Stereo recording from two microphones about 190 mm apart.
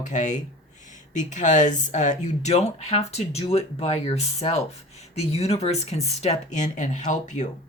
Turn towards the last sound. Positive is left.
turn(degrees=40)  # may be behind; listen again after turning